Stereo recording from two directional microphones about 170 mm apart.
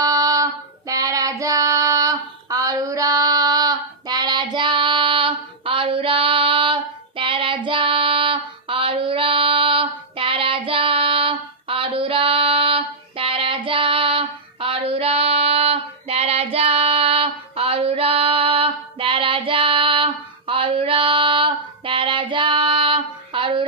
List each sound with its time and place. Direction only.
0.0 s female singing: 20° right (ahead or behind)
0.9 s child singing: 20° right (ahead or behind)